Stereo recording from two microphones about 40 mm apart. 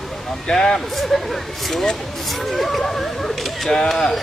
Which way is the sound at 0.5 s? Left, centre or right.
Centre.